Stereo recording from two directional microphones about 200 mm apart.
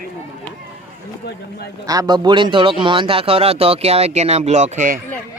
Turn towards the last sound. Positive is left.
turn(degrees=-40)  # may be behind; listen again after turning